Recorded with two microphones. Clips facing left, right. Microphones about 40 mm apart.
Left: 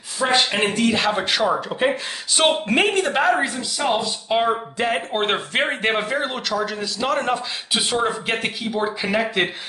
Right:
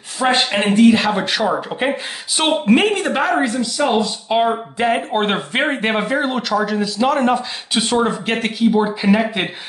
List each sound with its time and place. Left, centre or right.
0.4 s speech: centre
0.9 s a woman's voice: centre
2.4 s a woman's voice: centre